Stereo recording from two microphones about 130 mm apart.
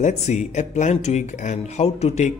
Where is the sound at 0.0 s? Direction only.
60° left (ahead or behind).